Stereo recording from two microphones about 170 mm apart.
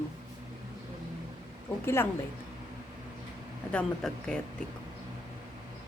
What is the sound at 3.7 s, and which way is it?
Speech, 5° left (ahead or behind).